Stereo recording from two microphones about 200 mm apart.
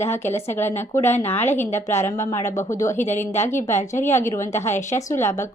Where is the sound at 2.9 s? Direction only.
35° left (ahead or behind).